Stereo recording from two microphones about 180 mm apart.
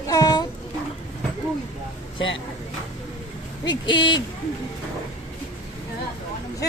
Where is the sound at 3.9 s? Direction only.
25° left (ahead or behind).